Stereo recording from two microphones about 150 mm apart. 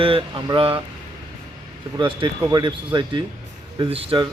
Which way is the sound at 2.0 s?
30° right (ahead or behind).